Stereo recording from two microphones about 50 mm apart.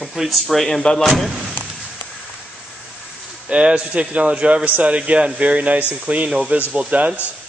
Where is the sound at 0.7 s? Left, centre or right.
Centre.